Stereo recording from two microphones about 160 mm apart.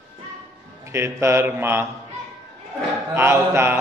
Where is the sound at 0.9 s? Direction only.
15° right (ahead or behind).